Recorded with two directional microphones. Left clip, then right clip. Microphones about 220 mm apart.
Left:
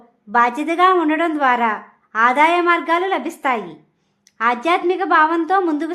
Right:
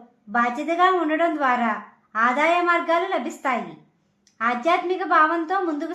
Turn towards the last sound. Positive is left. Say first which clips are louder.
# left 7 dB
turn(degrees=40)  # may be behind; listen again after turning